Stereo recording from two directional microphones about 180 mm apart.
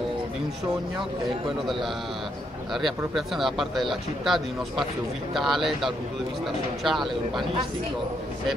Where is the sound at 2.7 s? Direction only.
Centre (ahead or behind).